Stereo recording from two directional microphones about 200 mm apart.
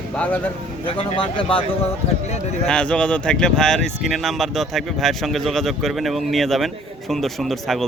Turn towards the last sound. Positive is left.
turn(degrees=0)  # may be behind; listen again after turning